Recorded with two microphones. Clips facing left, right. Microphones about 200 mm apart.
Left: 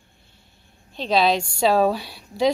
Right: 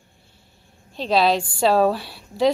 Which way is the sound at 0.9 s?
5° right (ahead or behind).